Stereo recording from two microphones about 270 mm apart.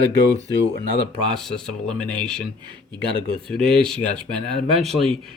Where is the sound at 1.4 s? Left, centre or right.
Centre.